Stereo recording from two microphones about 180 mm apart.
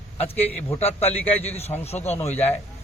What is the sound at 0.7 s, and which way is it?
A man's voice, 35° left (ahead or behind).